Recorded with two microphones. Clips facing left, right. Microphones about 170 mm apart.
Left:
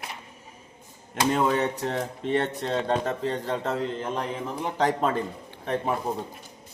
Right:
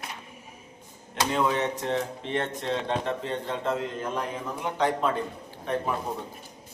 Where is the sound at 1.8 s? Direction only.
40° left (ahead or behind).